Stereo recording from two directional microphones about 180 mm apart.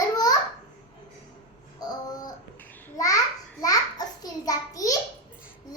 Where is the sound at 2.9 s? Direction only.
20° left (ahead or behind).